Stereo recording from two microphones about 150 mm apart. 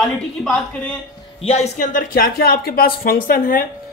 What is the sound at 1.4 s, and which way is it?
Speech, 45° left (ahead or behind).